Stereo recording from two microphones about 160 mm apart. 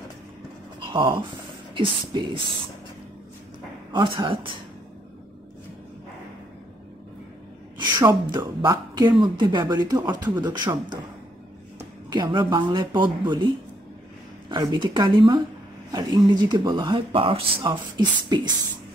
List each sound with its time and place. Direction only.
0.7 s a sound: 30° right (ahead or behind)
1.7 s speech: 30° right (ahead or behind)
3.9 s speech: 30° right (ahead or behind)
8.3 s speech: 25° right (ahead or behind)
12.1 s speech: 30° right (ahead or behind)
14.5 s speech: 25° right (ahead or behind)